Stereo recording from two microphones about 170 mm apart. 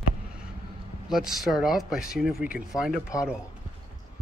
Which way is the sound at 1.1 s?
Centre (ahead or behind).